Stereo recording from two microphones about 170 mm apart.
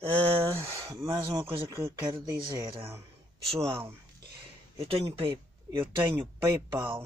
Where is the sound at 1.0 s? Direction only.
35° right (ahead or behind).